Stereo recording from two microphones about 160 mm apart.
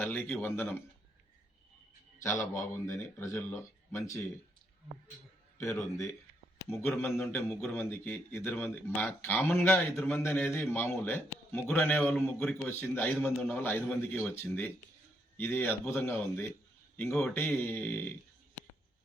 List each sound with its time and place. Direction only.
0.0 s speech: 10° left (ahead or behind)
2.2 s speech: 20° left (ahead or behind)
5.5 s speech: 15° left (ahead or behind)